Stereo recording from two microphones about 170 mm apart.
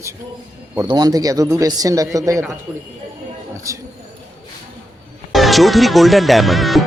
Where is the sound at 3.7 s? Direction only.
20° right (ahead or behind).